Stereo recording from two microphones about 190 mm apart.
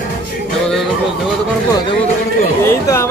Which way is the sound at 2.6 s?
15° left (ahead or behind).